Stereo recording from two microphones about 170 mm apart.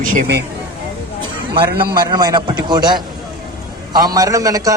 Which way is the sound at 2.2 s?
25° right (ahead or behind).